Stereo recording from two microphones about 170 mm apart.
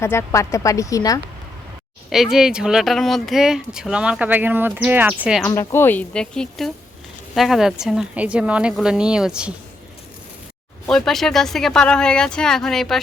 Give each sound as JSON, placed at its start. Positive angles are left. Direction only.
{"t": 0.0, "sound": "a woman's voice", "side_deg": 15}
{"t": 2.0, "sound": "speech", "side_deg": 0}
{"t": 5.5, "sound": "speech", "side_deg": 15}
{"t": 10.8, "sound": "speech", "side_deg": 5}